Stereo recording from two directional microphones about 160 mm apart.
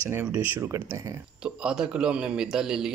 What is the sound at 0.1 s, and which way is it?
Speech, 15° right (ahead or behind).